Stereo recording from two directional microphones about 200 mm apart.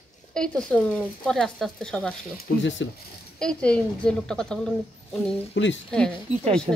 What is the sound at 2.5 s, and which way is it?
Speech, 55° left (ahead or behind).